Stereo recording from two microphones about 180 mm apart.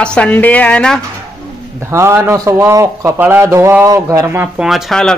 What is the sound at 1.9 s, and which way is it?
A man's voice, 15° right (ahead or behind).